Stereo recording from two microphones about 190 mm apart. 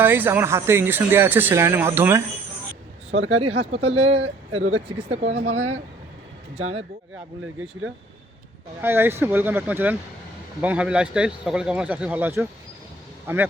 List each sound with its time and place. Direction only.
0.0 s speech: 10° right (ahead or behind)
3.2 s speech: 90° right
3.4 s speech: 30° right (ahead or behind)
6.6 s speech: 30° right (ahead or behind)
8.8 s speech: 10° right (ahead or behind)